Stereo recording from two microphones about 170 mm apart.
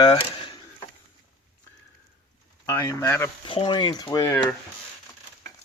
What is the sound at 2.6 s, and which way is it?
Speech, 15° left (ahead or behind).